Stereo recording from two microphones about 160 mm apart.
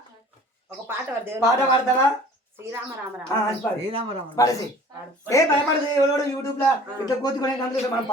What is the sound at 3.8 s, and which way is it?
Speech, 40° right (ahead or behind).